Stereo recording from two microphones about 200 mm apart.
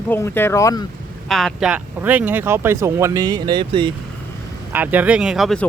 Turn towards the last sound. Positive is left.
turn(degrees=0)  # may be behind; listen again after turning